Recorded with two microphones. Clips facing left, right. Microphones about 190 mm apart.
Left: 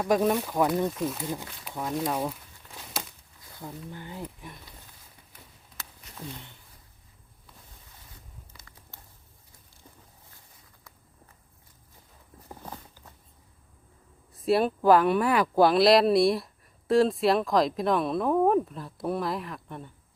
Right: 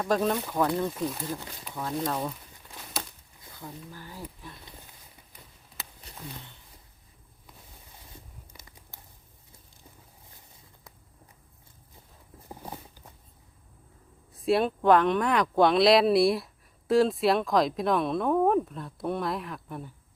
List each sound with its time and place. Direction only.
0.0 s speech: 15° left (ahead or behind)
0.9 s speech: centre (ahead or behind)
1.2 s speech: 15° left (ahead or behind)
1.7 s a sound: centre (ahead or behind)
2.0 s speech: 10° left (ahead or behind)
3.6 s speech: 20° left (ahead or behind)
6.1 s a sound: 30° right (ahead or behind)
12.5 s a sound: 15° right (ahead or behind)
14.3 s speech: centre (ahead or behind)